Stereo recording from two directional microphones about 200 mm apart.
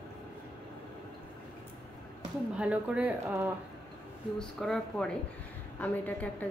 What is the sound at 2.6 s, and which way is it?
Speech, 5° right (ahead or behind).